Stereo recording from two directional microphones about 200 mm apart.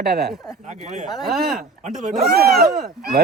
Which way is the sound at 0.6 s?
35° right (ahead or behind).